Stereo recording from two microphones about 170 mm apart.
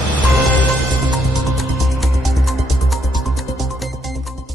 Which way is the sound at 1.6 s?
Centre (ahead or behind).